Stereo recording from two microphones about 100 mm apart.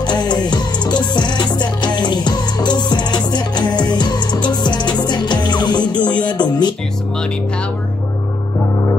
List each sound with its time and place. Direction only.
0.0 s music: 45° left (ahead or behind)